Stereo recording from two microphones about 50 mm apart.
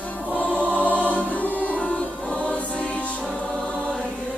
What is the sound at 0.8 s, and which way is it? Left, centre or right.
Music, left.